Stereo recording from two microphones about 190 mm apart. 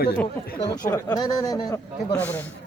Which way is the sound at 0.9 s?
15° left (ahead or behind).